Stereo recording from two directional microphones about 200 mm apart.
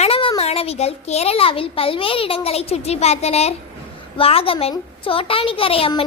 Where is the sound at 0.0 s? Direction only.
30° left (ahead or behind).